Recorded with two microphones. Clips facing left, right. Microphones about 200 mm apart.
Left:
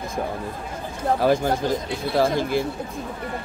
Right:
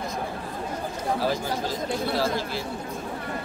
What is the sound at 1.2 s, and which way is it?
Speech, 55° left (ahead or behind).